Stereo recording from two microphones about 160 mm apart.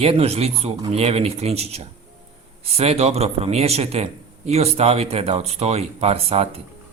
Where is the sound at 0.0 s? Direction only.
40° right (ahead or behind).